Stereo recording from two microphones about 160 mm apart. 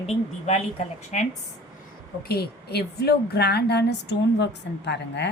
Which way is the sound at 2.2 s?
75° left (ahead or behind).